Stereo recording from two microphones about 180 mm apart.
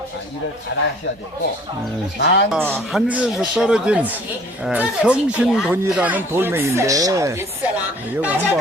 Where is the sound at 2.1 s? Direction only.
70° left (ahead or behind).